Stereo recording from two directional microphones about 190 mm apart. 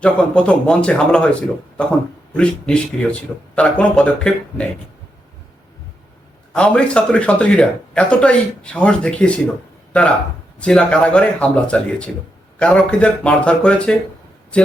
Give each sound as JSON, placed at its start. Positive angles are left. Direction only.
{"t": 0.0, "sound": "speech", "side_deg": 5}
{"t": 6.5, "sound": "speech", "side_deg": 5}
{"t": 10.6, "sound": "speech", "side_deg": 5}